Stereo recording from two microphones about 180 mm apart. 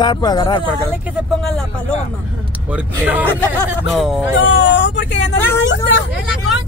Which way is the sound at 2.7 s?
10° right (ahead or behind).